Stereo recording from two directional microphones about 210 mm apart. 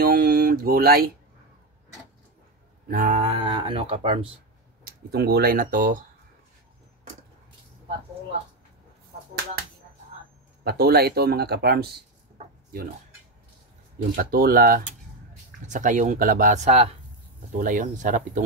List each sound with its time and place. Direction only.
0.0 s a sound: 45° right (ahead or behind)
2.9 s speech: 40° right (ahead or behind)
3.3 s speech: 25° right (ahead or behind)
5.1 s speech: 50° right (ahead or behind)
10.6 s speech: 50° right (ahead or behind)
14.1 s speech: 45° right (ahead or behind)